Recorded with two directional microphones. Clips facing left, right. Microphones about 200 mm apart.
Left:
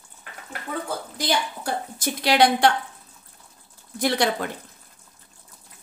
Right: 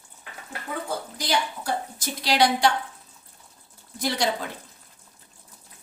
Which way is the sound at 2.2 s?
55° left (ahead or behind).